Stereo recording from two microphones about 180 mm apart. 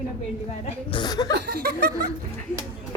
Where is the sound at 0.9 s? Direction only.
25° left (ahead or behind).